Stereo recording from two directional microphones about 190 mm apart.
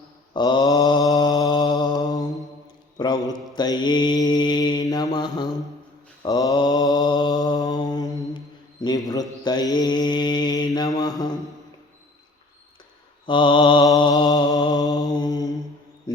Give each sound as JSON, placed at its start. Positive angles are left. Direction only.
{"t": 0.3, "sound": "mantra", "side_deg": 25}
{"t": 13.2, "sound": "mantra", "side_deg": 25}